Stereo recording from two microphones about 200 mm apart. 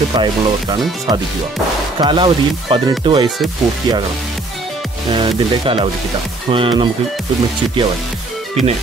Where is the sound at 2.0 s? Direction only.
20° right (ahead or behind).